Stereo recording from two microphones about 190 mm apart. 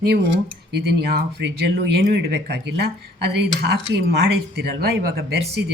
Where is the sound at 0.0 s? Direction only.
60° right (ahead or behind).